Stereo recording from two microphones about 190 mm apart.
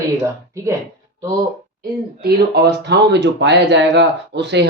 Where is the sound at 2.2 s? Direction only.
55° right (ahead or behind).